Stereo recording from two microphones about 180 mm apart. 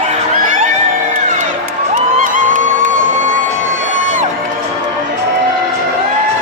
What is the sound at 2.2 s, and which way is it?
Music, 50° right (ahead or behind).